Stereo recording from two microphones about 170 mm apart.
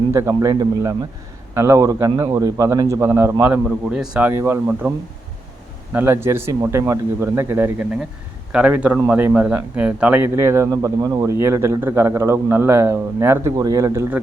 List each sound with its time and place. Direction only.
0.1 s a man's voice: 15° right (ahead or behind)